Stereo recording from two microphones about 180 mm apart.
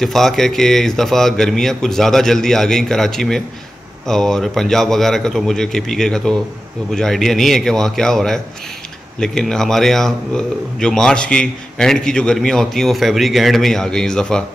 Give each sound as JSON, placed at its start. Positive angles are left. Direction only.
{"t": 0.0, "sound": "a man's voice", "side_deg": 0}